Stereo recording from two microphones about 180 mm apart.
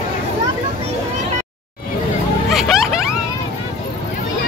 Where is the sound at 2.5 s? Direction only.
Centre (ahead or behind).